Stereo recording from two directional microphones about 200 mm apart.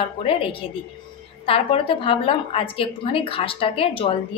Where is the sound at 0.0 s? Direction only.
25° left (ahead or behind).